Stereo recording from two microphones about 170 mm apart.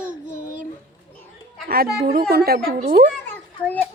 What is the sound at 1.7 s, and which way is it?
Speech, 60° right (ahead or behind).